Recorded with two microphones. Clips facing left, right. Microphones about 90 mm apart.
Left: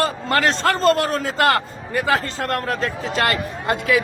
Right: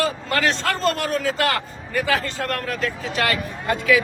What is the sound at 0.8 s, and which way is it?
A man's voice, 40° left (ahead or behind).